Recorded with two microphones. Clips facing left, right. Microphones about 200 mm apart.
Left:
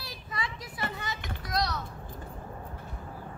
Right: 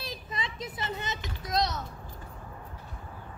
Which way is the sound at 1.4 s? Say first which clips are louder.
Right 2 dB; 20° right (ahead or behind).